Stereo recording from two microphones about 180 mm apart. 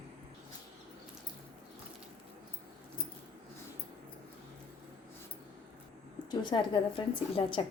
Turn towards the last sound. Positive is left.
turn(degrees=30)  # may be behind; listen again after turning